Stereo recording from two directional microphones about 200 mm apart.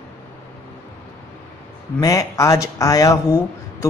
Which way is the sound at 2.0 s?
15° left (ahead or behind).